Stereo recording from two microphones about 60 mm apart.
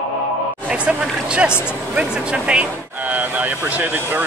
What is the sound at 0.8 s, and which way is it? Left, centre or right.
Speech, centre.